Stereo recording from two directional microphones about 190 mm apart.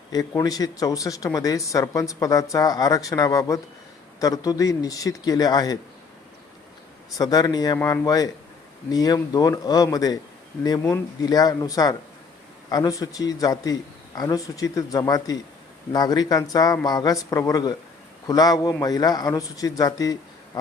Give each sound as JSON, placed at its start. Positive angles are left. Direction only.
{"t": 0.1, "sound": "speech", "side_deg": 20}
{"t": 7.2, "sound": "speech", "side_deg": 20}